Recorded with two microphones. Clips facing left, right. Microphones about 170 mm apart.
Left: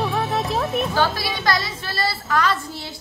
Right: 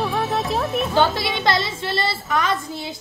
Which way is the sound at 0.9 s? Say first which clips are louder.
Right 3 dB; 25° right (ahead or behind).